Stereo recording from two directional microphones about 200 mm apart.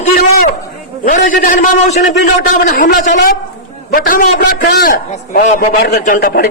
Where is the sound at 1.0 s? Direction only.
40° left (ahead or behind).